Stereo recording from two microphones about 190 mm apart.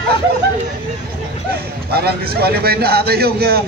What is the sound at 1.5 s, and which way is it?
A man's voice, 55° right (ahead or behind).